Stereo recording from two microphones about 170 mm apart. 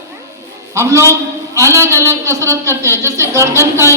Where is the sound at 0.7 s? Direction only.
15° right (ahead or behind).